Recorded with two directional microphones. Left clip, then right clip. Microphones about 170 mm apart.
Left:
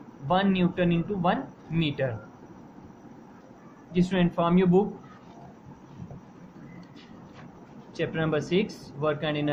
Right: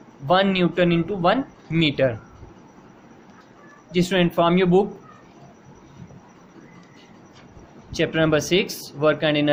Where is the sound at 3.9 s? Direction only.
55° right (ahead or behind).